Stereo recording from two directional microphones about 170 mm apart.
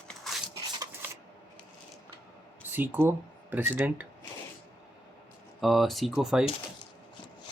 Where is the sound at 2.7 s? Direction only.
10° right (ahead or behind).